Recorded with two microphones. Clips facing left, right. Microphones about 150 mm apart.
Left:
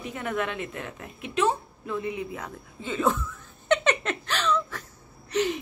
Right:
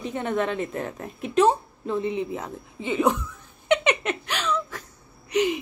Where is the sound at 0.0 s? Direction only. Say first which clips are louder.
Right 4 dB; 30° right (ahead or behind).